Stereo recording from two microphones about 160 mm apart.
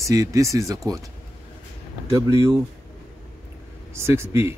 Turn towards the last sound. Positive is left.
turn(degrees=-15)  # may be behind; listen again after turning